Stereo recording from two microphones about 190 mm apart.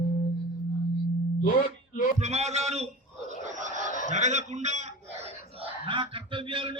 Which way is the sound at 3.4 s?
40° right (ahead or behind).